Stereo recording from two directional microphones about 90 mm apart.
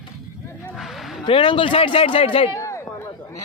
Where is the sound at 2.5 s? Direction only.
35° left (ahead or behind).